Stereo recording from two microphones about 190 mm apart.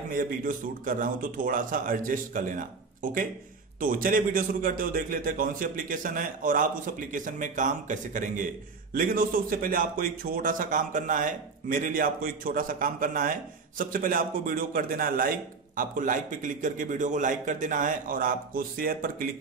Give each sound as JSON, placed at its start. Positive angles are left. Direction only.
{"t": 0.1, "sound": "a man's voice", "side_deg": -45}